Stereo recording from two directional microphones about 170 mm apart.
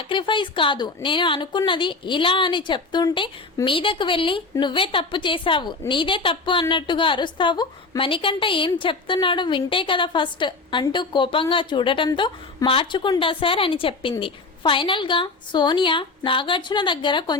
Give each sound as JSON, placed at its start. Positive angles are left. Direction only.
{"t": 0.0, "sound": "a woman's voice", "side_deg": 30}